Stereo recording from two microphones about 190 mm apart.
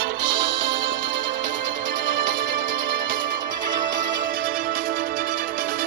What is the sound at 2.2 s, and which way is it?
Music, 45° right (ahead or behind).